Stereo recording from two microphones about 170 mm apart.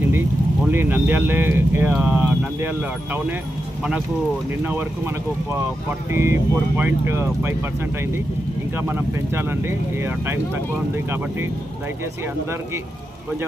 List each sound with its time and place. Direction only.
0.0 s vehicle: 15° right (ahead or behind)
0.7 s speech: 10° right (ahead or behind)
4.6 s speech: 10° right (ahead or behind)
8.7 s speech: 10° right (ahead or behind)